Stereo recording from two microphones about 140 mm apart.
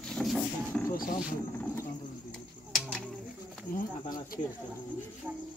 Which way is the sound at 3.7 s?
90° left.